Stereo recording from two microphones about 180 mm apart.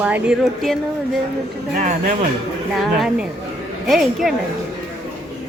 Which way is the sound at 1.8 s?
45° right (ahead or behind).